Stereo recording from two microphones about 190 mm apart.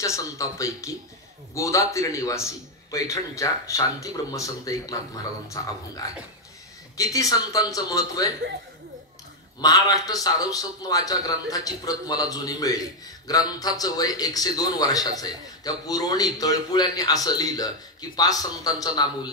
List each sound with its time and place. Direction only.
0.0 s a man's voice: 15° left (ahead or behind)
7.0 s a man's voice: 20° left (ahead or behind)
9.6 s a man's voice: 20° left (ahead or behind)